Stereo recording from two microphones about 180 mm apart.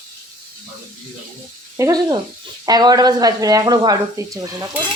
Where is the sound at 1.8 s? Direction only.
20° right (ahead or behind).